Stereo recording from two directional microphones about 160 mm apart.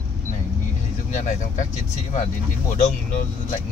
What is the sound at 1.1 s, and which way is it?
Speech, 50° left (ahead or behind).